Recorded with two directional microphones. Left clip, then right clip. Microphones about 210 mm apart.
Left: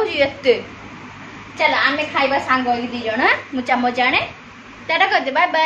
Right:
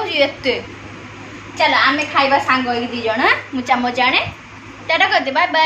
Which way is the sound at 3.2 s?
20° left (ahead or behind).